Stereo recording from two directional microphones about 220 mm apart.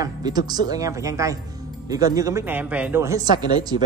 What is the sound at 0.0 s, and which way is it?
Speech, 20° right (ahead or behind).